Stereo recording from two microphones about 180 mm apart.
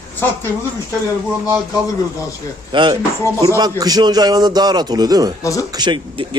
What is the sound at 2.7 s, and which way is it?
A man's voice, 25° right (ahead or behind).